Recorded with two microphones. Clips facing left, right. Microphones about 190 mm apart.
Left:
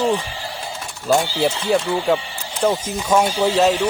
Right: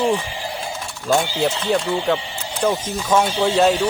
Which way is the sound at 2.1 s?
20° right (ahead or behind).